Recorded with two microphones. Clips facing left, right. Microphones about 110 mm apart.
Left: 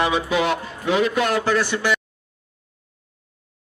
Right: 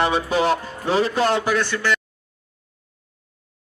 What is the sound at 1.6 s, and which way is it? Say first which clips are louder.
Speech: left 1 dB; 10° left (ahead or behind).